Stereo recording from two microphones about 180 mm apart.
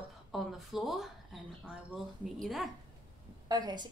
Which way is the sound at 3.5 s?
25° right (ahead or behind).